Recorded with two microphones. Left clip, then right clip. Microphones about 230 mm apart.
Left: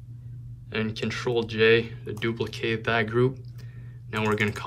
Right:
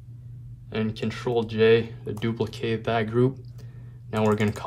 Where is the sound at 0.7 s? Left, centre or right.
Centre.